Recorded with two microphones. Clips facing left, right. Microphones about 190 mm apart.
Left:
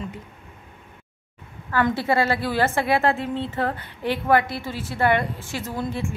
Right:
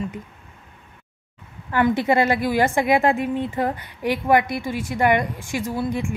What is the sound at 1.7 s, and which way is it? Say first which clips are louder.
A woman's voice: right 3 dB; 15° right (ahead or behind).